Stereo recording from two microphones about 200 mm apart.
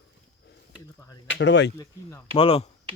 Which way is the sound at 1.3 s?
60° left (ahead or behind).